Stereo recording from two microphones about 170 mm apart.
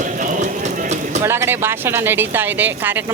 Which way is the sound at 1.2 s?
15° right (ahead or behind).